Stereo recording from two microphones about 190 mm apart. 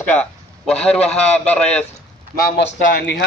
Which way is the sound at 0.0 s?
5° left (ahead or behind).